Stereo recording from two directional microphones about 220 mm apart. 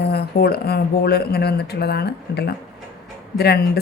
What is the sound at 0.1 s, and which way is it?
Speech, 45° left (ahead or behind).